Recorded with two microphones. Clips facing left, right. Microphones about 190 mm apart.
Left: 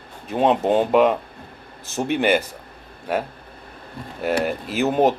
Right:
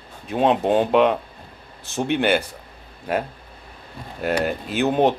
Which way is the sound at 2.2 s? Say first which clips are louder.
Left 2 dB; 5° left (ahead or behind).